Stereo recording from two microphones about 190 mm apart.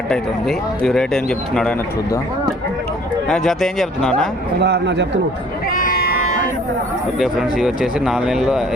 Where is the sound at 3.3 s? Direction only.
Centre (ahead or behind).